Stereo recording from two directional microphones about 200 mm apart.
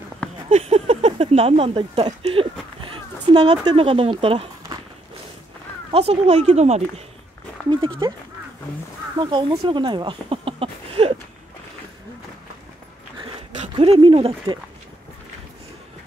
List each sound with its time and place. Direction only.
0.5 s speech: 30° right (ahead or behind)
5.9 s speech: 30° right (ahead or behind)
9.2 s speech: 25° right (ahead or behind)
13.2 s a sound: 30° right (ahead or behind)